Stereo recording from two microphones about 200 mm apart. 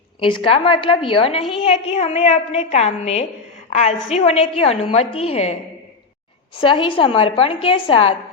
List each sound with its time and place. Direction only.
0.2 s a woman's voice: 25° left (ahead or behind)
6.6 s a woman's voice: 25° left (ahead or behind)